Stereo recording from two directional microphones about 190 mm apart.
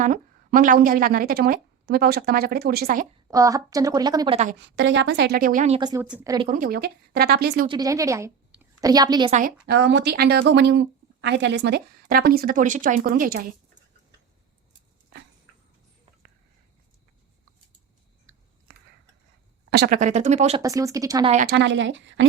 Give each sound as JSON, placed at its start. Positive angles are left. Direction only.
{"t": 0.0, "sound": "a woman's voice", "side_deg": -45}
{"t": 3.2, "sound": "speech", "side_deg": -20}
{"t": 4.6, "sound": "speech", "side_deg": -70}
{"t": 5.7, "sound": "speech", "side_deg": -25}
{"t": 6.0, "sound": "speech", "side_deg": -10}
{"t": 6.5, "sound": "speech", "side_deg": -50}
{"t": 7.7, "sound": "speech", "side_deg": -20}
{"t": 9.6, "sound": "speech", "side_deg": -65}
{"t": 19.7, "sound": "speech", "side_deg": -60}
{"t": 20.0, "sound": "speech", "side_deg": -40}
{"t": 20.6, "sound": "speech", "side_deg": -15}
{"t": 21.4, "sound": "a woman's voice", "side_deg": -65}